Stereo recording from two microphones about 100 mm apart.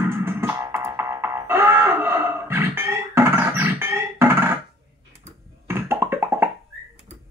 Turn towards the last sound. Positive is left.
turn(degrees=-25)  # may be behind; listen again after turning